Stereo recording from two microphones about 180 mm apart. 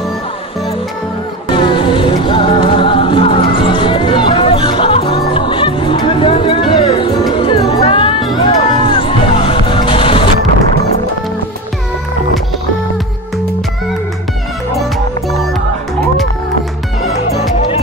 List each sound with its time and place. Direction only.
1.5 s music: 25° left (ahead or behind)